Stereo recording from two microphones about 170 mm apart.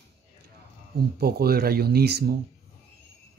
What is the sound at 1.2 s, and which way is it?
Speech, 65° right (ahead or behind).